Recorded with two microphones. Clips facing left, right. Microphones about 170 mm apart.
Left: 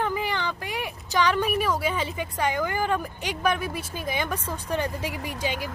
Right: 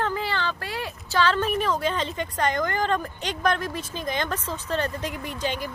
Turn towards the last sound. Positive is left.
turn(degrees=10)  # may be behind; listen again after turning